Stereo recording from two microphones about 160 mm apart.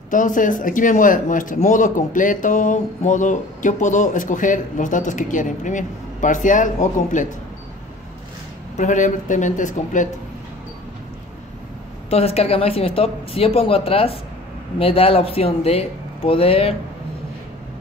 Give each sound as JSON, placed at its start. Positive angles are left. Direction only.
{"t": 0.1, "sound": "speech", "side_deg": 55}
{"t": 8.7, "sound": "speech", "side_deg": 50}
{"t": 12.1, "sound": "speech", "side_deg": 40}